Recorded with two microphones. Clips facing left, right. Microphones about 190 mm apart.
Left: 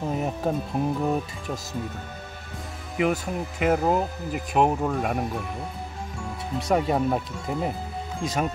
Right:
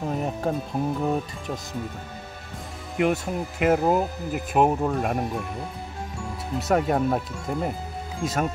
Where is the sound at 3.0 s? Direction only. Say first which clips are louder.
Right 1 dB; centre (ahead or behind).